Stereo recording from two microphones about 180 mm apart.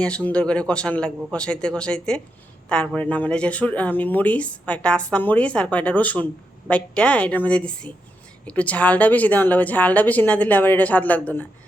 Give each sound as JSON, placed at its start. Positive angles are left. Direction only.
{"t": 0.0, "sound": "a man's voice", "side_deg": 5}